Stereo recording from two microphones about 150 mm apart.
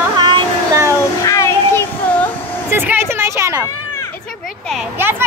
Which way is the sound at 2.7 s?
15° right (ahead or behind).